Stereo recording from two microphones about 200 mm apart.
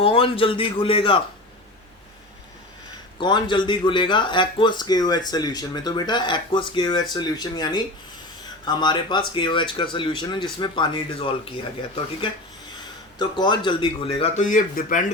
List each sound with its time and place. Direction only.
0.0 s speech: 25° left (ahead or behind)
3.2 s speech: 25° left (ahead or behind)
13.1 s speech: 20° left (ahead or behind); by 15.0 s 40° left (ahead or behind)